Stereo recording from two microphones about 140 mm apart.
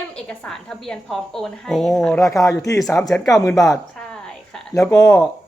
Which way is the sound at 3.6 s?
Centre (ahead or behind).